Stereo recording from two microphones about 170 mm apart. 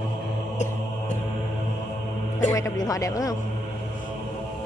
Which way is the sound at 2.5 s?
20° left (ahead or behind).